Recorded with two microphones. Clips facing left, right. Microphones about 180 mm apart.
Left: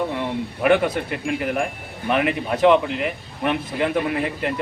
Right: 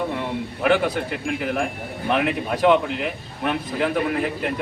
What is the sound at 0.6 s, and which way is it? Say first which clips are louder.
A man's voice: left 2 dB; centre (ahead or behind).